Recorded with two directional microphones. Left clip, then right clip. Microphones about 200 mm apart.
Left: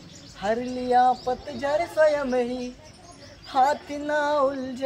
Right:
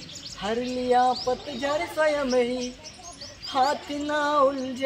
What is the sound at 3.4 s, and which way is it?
Speech, 20° left (ahead or behind).